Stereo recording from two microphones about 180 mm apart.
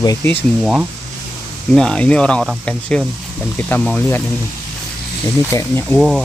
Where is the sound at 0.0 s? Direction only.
15° left (ahead or behind).